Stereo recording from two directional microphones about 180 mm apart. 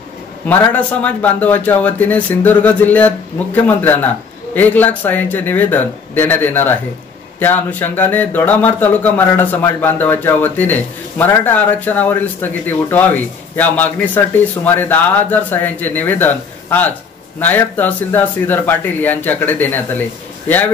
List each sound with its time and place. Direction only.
0.5 s speech: 10° left (ahead or behind)